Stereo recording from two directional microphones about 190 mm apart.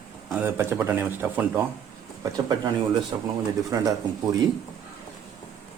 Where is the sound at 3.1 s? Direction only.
25° right (ahead or behind).